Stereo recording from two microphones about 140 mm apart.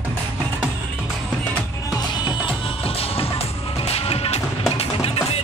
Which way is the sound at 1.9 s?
35° left (ahead or behind).